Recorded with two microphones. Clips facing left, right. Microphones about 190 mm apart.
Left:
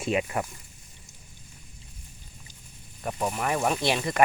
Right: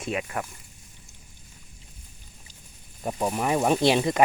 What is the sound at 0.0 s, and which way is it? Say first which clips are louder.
Speech: left 3 dB; 15° left (ahead or behind).